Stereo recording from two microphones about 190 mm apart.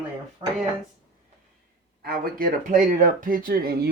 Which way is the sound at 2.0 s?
50° right (ahead or behind).